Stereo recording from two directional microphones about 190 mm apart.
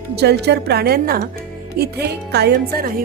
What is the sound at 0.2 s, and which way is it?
A woman's voice, 60° right (ahead or behind).